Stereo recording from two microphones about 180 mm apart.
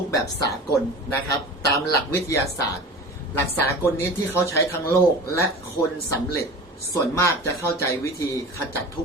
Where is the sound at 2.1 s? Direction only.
15° left (ahead or behind).